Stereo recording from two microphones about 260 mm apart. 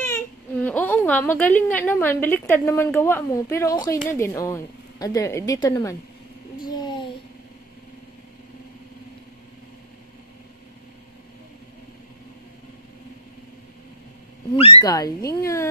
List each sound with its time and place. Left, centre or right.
0.6 s a woman's voice: centre
6.6 s a sound: centre
14.5 s a woman's voice: left